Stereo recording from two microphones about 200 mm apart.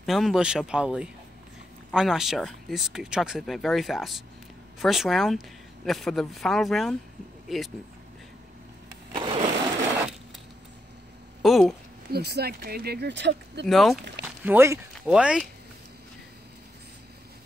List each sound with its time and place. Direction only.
0.0 s speech: centre (ahead or behind)
9.1 s a sound: 25° right (ahead or behind)
11.4 s speech: centre (ahead or behind)
12.1 s speech: 55° right (ahead or behind)
13.7 s speech: centre (ahead or behind)